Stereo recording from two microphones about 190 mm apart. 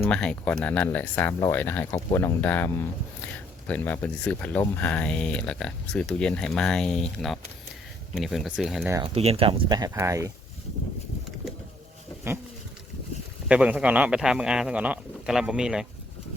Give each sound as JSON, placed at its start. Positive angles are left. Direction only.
{"t": 0.0, "sound": "speech", "side_deg": 5}
{"t": 9.0, "sound": "speech", "side_deg": -30}
{"t": 13.5, "sound": "speech", "side_deg": -5}